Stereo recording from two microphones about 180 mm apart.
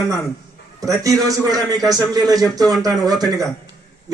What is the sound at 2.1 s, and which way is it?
Speech, 20° right (ahead or behind).